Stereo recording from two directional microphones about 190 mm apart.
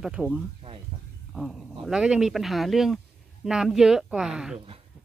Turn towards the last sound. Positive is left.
turn(degrees=-5)  # may be behind; listen again after turning